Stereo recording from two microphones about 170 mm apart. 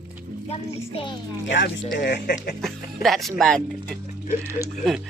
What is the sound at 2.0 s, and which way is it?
Speech, 65° left (ahead or behind).